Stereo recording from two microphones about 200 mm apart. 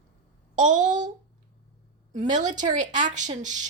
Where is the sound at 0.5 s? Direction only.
40° right (ahead or behind).